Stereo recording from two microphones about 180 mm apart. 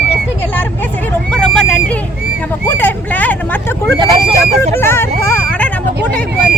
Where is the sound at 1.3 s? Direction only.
5° left (ahead or behind).